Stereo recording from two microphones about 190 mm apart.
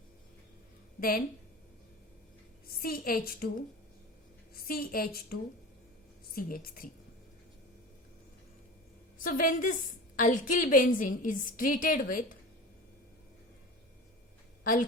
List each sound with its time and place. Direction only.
0.9 s a woman's voice: 50° left (ahead or behind)
2.8 s a woman's voice: 50° left (ahead or behind)
4.5 s a woman's voice: 50° left (ahead or behind)
9.1 s a woman's voice: 45° left (ahead or behind)
14.6 s a woman's voice: 45° left (ahead or behind)